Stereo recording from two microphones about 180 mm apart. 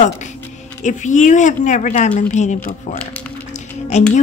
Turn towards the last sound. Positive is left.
turn(degrees=40)  # may be behind; listen again after turning